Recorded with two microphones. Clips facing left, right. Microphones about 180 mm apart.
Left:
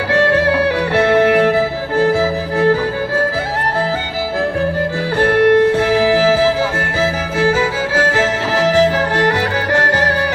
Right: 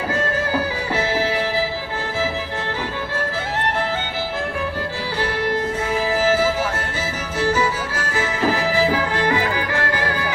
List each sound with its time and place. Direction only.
0.1 s music: 70° left (ahead or behind)
5.2 s music: 65° left (ahead or behind)